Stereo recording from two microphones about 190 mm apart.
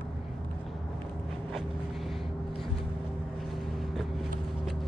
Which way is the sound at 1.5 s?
Centre (ahead or behind).